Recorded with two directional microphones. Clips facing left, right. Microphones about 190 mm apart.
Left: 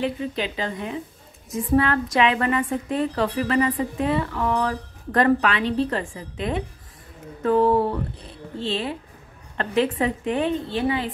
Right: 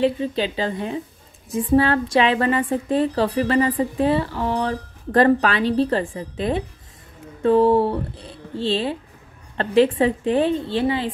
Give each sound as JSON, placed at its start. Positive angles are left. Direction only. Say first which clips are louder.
{"t": 0.0, "sound": "a woman's voice", "louder": "right 5 dB", "side_deg": -30}